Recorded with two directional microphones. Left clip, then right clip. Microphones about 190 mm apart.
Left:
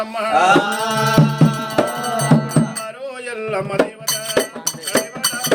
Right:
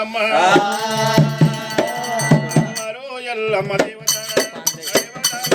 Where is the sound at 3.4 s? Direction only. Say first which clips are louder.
Right 4 dB; 20° left (ahead or behind).